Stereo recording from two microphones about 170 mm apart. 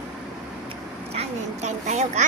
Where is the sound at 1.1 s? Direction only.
40° right (ahead or behind).